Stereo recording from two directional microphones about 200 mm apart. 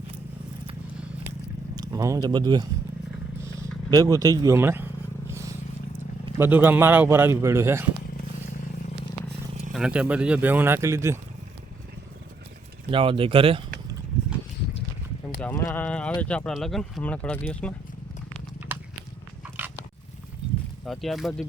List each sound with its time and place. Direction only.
1.7 s speech: 15° right (ahead or behind)
3.9 s a man's voice: 15° right (ahead or behind)
6.4 s a man's voice: 10° right (ahead or behind)
9.7 s a man's voice: 5° right (ahead or behind)
12.9 s speech: 25° right (ahead or behind)
15.4 s speech: 10° left (ahead or behind)
18.7 s walk: 10° right (ahead or behind)
20.8 s speech: centre (ahead or behind)